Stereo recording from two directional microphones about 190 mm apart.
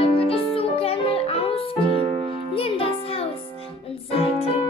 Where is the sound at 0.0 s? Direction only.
30° left (ahead or behind).